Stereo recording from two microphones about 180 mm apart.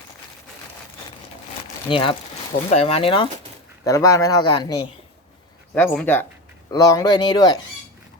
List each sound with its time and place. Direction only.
1.9 s speech: 30° left (ahead or behind)
3.8 s speech: 15° left (ahead or behind)
5.7 s speech: 5° left (ahead or behind)
6.7 s speech: 20° left (ahead or behind)